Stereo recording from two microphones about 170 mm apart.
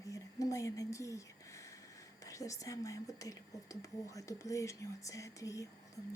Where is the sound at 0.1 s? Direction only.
20° left (ahead or behind).